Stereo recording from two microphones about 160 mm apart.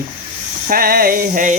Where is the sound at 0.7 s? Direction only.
65° right (ahead or behind).